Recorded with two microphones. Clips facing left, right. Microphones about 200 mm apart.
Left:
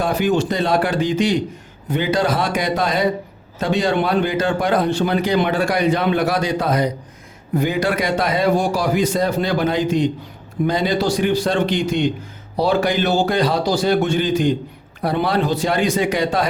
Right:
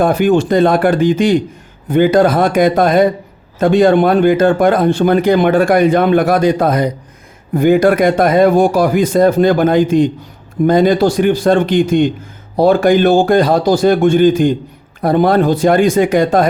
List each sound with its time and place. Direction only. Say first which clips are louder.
0.0 s a man's voice: right 7 dB; 55° right (ahead or behind)